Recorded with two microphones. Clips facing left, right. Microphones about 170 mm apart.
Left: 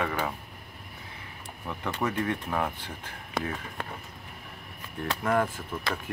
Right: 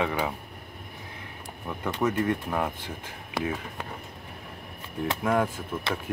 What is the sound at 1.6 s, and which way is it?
Speech, 5° right (ahead or behind).